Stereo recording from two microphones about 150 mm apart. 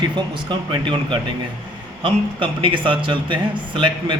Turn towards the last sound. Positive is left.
turn(degrees=-35)  # may be behind; listen again after turning